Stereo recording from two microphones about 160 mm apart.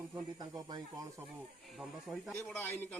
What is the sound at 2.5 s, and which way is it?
Speech, 10° left (ahead or behind).